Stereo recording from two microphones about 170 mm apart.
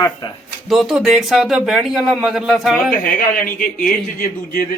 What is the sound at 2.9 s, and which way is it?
Speech, 55° left (ahead or behind).